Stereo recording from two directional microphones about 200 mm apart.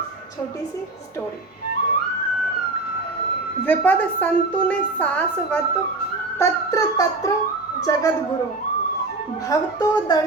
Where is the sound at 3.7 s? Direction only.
10° left (ahead or behind).